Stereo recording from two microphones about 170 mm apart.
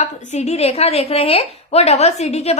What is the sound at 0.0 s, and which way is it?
A woman's voice, 40° left (ahead or behind).